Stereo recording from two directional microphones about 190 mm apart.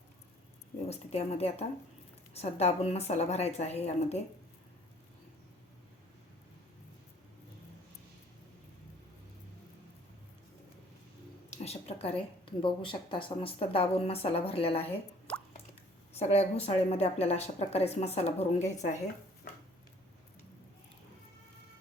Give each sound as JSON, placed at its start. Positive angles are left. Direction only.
{"t": 0.9, "sound": "speech", "side_deg": 35}
{"t": 11.5, "sound": "speech", "side_deg": 35}
{"t": 15.3, "sound": "drip", "side_deg": 5}
{"t": 16.1, "sound": "speech", "side_deg": 35}